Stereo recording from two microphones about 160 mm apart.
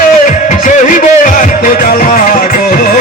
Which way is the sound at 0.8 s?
55° left (ahead or behind).